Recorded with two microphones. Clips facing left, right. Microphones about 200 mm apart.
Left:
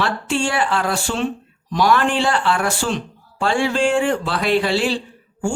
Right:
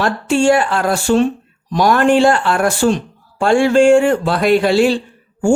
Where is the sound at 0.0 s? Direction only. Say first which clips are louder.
Right 7 dB; 45° right (ahead or behind).